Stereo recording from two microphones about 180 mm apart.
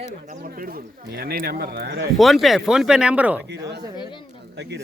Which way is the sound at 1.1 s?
55° right (ahead or behind).